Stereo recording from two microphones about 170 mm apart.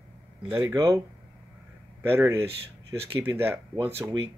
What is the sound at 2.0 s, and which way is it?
Speech, 15° right (ahead or behind).